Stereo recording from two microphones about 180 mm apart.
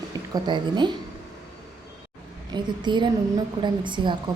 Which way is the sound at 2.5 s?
25° right (ahead or behind).